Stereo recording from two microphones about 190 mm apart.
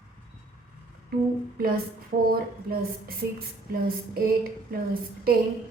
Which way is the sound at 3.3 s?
50° right (ahead or behind).